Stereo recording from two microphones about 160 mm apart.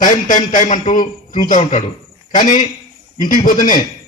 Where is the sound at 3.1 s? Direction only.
55° left (ahead or behind).